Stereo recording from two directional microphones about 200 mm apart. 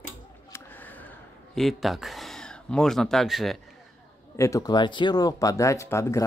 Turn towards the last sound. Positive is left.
turn(degrees=15)  # may be behind; listen again after turning